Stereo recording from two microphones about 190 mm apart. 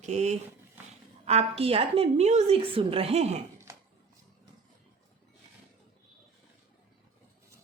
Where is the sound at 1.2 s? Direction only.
35° right (ahead or behind).